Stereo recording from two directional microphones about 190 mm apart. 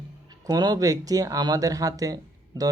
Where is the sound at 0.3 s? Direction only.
20° right (ahead or behind).